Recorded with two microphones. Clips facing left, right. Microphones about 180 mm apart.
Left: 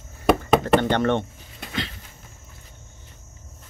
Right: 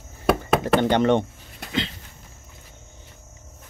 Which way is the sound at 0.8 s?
15° right (ahead or behind).